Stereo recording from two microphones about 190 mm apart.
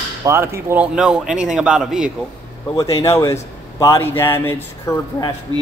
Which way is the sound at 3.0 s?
15° left (ahead or behind).